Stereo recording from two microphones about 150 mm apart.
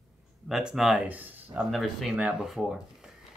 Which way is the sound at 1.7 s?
Centre (ahead or behind).